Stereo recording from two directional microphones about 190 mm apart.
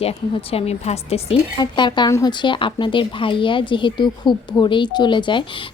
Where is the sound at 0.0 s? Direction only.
30° left (ahead or behind).